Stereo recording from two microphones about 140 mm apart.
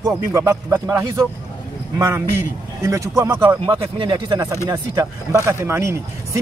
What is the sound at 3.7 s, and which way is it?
Speech, 35° right (ahead or behind).